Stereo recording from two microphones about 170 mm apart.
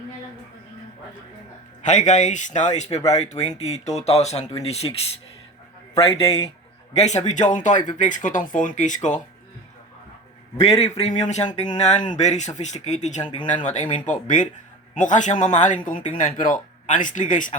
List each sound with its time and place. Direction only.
1.8 s speech: 45° left (ahead or behind)
6.0 s speech: 35° left (ahead or behind)
10.6 s speech: 35° left (ahead or behind)